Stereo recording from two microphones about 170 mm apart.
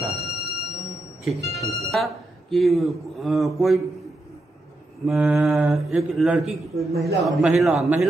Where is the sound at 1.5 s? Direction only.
20° left (ahead or behind).